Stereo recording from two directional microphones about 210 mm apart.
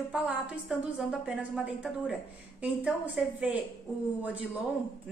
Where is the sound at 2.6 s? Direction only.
5° right (ahead or behind).